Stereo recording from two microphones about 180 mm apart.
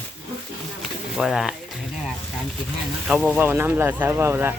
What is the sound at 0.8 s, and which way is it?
Speech, centre (ahead or behind).